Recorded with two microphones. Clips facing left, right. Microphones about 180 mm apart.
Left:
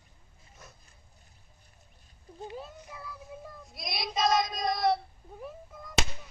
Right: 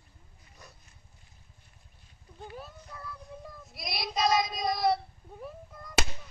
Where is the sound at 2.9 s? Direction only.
10° left (ahead or behind).